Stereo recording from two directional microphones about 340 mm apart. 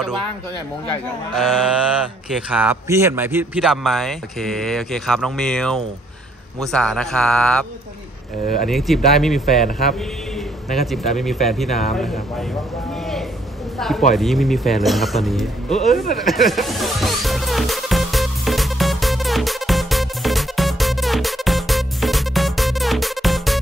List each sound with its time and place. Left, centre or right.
2.2 s a man's voice: centre
8.6 s a man's voice: centre
10.7 s a man's voice: centre
13.7 s speech: centre
14.1 s music: centre